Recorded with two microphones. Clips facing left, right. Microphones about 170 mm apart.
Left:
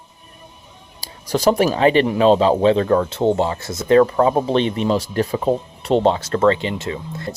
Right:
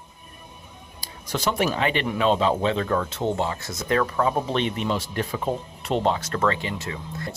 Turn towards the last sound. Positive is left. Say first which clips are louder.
# left 6 dB
turn(degrees=25)  # may be behind; listen again after turning